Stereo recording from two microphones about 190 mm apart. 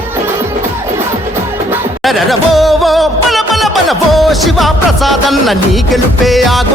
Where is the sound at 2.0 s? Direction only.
Centre (ahead or behind).